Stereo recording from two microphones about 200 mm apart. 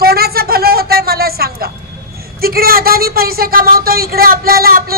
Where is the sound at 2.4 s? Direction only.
50° right (ahead or behind).